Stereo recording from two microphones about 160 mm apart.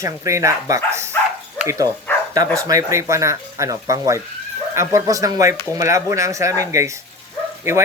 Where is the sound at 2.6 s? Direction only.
20° right (ahead or behind).